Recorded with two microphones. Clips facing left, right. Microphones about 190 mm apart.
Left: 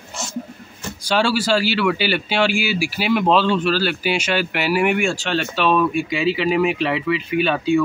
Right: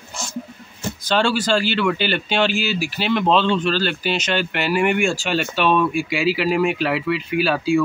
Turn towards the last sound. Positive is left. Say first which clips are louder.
# left 1 dB
turn(degrees=-5)  # may be behind; listen again after turning